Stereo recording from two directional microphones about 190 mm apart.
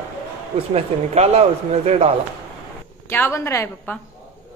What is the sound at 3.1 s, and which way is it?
Speech, 10° left (ahead or behind).